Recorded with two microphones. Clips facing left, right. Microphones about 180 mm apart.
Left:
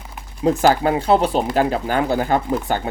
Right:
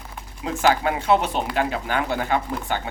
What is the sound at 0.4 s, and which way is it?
Speech, 35° left (ahead or behind).